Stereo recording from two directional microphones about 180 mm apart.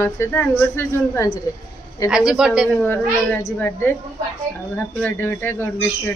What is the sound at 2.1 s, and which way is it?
Speech, 5° right (ahead or behind).